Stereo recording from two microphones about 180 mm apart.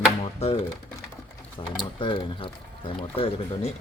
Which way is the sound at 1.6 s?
25° left (ahead or behind).